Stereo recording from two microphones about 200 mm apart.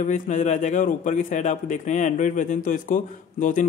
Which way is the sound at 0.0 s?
40° left (ahead or behind).